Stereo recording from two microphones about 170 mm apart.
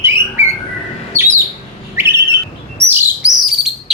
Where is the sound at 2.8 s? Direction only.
15° right (ahead or behind).